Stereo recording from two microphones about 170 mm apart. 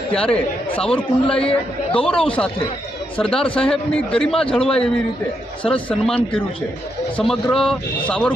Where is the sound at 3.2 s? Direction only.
5° left (ahead or behind).